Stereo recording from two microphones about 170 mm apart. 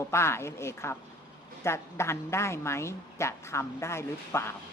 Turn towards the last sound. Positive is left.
turn(degrees=15)  # may be behind; listen again after turning